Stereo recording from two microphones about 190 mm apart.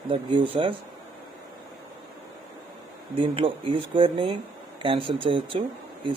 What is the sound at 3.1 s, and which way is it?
Speech, 25° right (ahead or behind).